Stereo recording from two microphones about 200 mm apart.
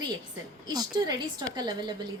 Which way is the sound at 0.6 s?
20° right (ahead or behind).